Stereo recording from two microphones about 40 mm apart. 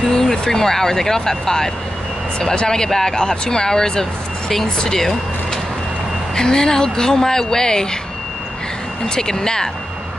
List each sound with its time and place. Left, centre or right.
0.0 s speech: centre
9.1 s speech: centre